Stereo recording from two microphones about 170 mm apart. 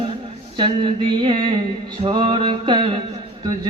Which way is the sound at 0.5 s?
30° right (ahead or behind).